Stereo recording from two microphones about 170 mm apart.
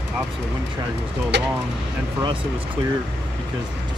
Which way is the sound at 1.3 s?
90° right.